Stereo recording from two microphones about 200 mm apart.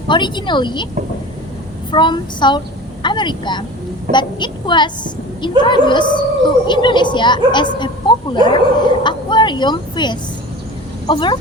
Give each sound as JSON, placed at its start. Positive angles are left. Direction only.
{"t": 0.1, "sound": "a woman's voice", "side_deg": 20}
{"t": 1.9, "sound": "a woman's voice", "side_deg": 25}